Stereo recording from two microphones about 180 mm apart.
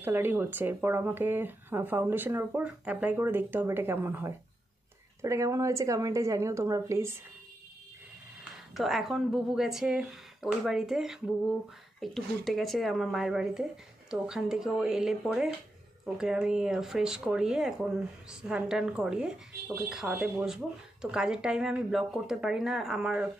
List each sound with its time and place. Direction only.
0.0 s speech: 10° right (ahead or behind)
8.7 s speech: centre (ahead or behind)